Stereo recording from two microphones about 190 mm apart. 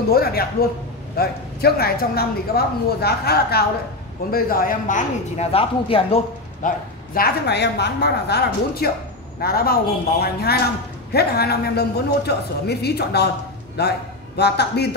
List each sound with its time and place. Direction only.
0.1 s speech: 55° left (ahead or behind); by 6.2 s 30° left (ahead or behind)
6.6 s speech: 45° left (ahead or behind)
7.2 s a man's voice: 55° left (ahead or behind)